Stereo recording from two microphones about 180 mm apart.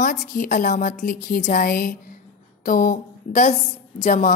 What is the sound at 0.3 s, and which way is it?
A woman's voice, 50° left (ahead or behind).